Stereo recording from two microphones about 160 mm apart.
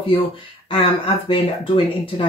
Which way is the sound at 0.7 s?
35° left (ahead or behind).